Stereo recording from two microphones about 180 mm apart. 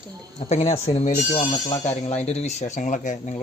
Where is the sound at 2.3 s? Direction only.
40° left (ahead or behind).